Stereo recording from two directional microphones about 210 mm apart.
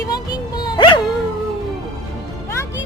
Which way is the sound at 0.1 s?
20° left (ahead or behind).